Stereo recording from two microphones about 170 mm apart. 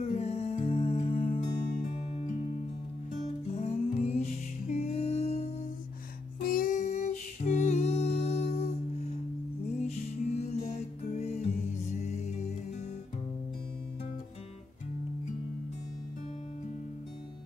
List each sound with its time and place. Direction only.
0.0 s music: 40° left (ahead or behind)
6.4 s music: 55° left (ahead or behind); by 8.7 s 40° left (ahead or behind)
9.8 s music: 40° left (ahead or behind)